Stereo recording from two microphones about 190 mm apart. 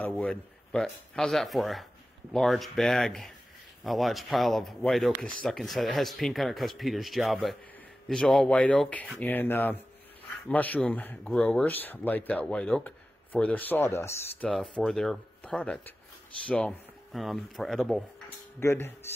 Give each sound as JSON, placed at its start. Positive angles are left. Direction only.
{"t": 0.0, "sound": "speech", "side_deg": 5}
{"t": 18.6, "sound": "speech", "side_deg": 15}